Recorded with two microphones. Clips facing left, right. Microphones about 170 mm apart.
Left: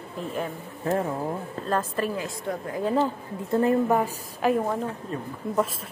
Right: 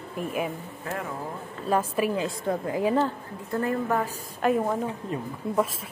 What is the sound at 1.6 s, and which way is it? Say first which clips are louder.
A woman's voice: right 3 dB; 10° right (ahead or behind).